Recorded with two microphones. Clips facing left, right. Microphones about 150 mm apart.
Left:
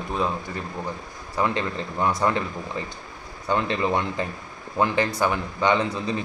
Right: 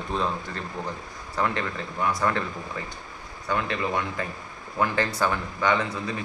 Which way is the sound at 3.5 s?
25° left (ahead or behind).